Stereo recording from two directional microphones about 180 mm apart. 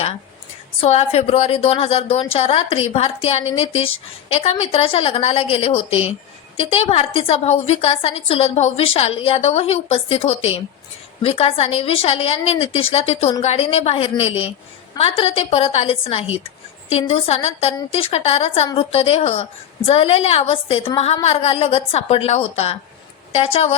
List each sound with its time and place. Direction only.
0.8 s a woman's voice: 35° left (ahead or behind)